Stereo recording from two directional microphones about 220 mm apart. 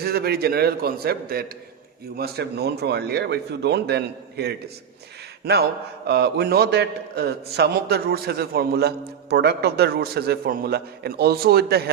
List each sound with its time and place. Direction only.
0.0 s a man's voice: 45° right (ahead or behind)
6.1 s a man's voice: 45° right (ahead or behind)